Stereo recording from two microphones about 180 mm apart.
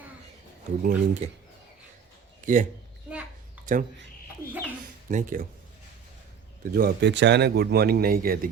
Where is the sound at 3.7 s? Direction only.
45° right (ahead or behind).